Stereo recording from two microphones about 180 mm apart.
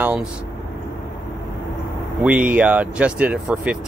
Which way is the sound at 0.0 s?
5° right (ahead or behind).